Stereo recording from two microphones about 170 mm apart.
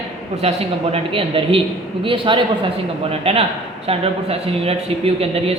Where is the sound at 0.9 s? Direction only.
30° right (ahead or behind).